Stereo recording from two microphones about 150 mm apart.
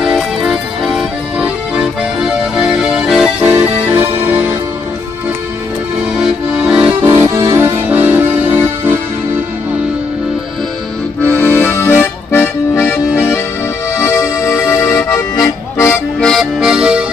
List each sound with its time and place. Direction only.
0.0 s music: 5° right (ahead or behind)
6.1 s accordion: 5° right (ahead or behind)
7.5 s music: 15° right (ahead or behind)
11.2 s accordion: 10° left (ahead or behind)
13.9 s music: 20° left (ahead or behind)
16.2 s accordion: centre (ahead or behind)